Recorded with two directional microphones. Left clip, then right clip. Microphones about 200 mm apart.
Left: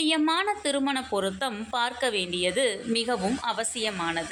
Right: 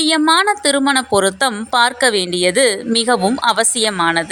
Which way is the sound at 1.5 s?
40° right (ahead or behind).